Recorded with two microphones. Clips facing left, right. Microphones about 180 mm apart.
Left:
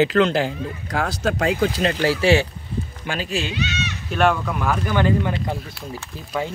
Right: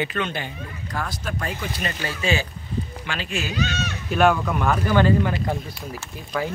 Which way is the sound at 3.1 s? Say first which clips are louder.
Left 5 dB; 40° left (ahead or behind).